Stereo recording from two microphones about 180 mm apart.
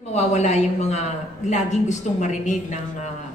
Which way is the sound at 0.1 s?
40° left (ahead or behind).